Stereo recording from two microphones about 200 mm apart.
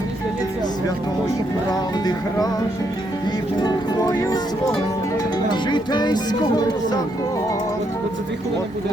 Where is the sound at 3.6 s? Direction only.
20° left (ahead or behind).